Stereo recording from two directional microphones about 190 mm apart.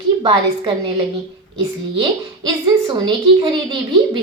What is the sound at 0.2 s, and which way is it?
Speech, 25° right (ahead or behind).